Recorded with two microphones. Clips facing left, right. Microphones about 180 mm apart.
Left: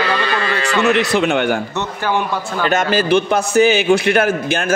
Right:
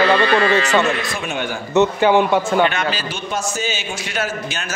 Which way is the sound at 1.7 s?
20° right (ahead or behind).